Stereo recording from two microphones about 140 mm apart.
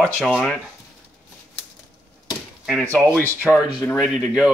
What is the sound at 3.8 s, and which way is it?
Speech, 10° left (ahead or behind).